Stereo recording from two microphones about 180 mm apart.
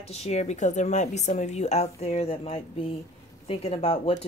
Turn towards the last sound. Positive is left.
turn(degrees=35)  # may be behind; listen again after turning